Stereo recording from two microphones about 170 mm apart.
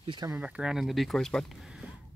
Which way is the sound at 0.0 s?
25° right (ahead or behind).